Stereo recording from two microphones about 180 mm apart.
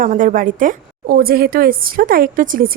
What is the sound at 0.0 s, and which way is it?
A woman's voice, 45° right (ahead or behind).